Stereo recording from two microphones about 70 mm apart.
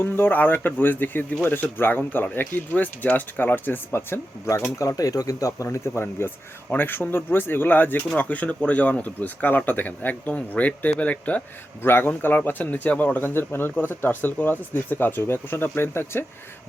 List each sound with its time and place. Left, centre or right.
0.0 s speech: left
4.8 s speech: left
5.6 s a man's voice: left
11.8 s a man's voice: left